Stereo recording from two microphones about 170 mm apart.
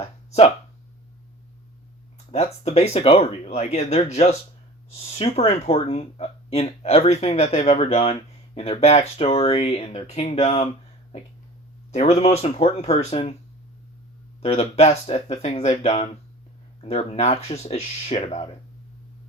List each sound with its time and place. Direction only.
0.0 s speech: 40° left (ahead or behind)
2.3 s speech: 40° left (ahead or behind)
11.9 s speech: 40° left (ahead or behind)
14.4 s speech: 40° left (ahead or behind)